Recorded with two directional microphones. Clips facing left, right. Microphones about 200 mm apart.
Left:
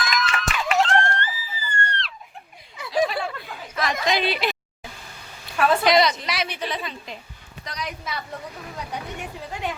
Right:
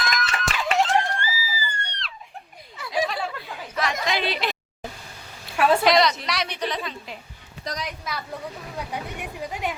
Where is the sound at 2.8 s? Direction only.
15° left (ahead or behind).